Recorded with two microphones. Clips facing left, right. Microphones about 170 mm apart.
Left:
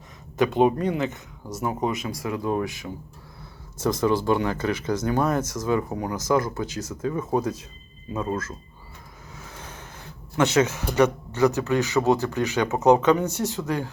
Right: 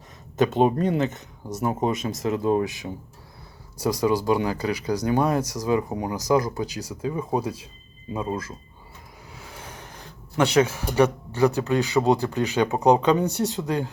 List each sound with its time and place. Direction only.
0.3 s speech: 20° right (ahead or behind)
4.5 s speech: 35° right (ahead or behind)
5.0 s speech: 15° right (ahead or behind)
5.4 s speech: 35° right (ahead or behind)
5.6 s speech: 15° right (ahead or behind)
9.3 s vehicle: 15° right (ahead or behind)
10.3 s speech: 15° right (ahead or behind)